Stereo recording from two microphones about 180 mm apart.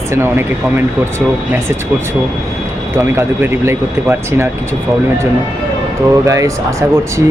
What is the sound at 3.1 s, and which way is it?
Speech, 15° right (ahead or behind).